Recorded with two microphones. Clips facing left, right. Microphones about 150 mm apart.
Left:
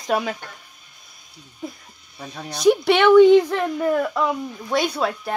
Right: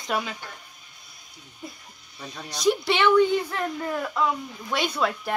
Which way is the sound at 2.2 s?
60° left (ahead or behind).